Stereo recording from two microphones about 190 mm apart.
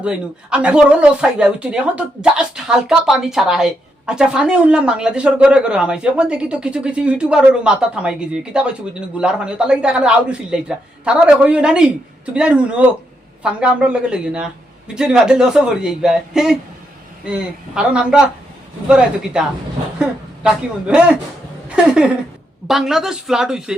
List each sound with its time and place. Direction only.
0.0 s a woman's voice: 5° right (ahead or behind)